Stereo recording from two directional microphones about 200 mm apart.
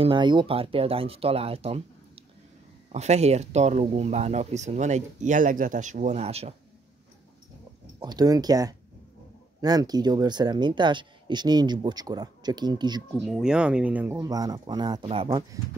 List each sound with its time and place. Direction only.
0.0 s speech: 25° right (ahead or behind)
8.0 s speech: 20° right (ahead or behind)
13.2 s speech: 5° right (ahead or behind)
14.2 s speech: 20° right (ahead or behind)